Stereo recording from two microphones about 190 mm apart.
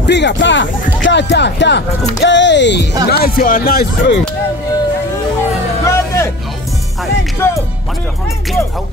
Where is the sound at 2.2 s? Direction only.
65° left (ahead or behind).